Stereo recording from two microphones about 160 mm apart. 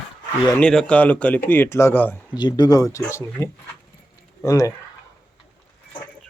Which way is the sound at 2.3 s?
25° left (ahead or behind).